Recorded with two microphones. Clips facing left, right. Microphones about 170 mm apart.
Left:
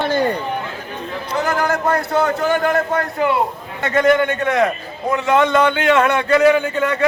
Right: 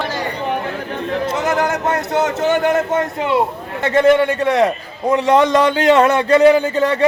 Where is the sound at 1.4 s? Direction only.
20° right (ahead or behind).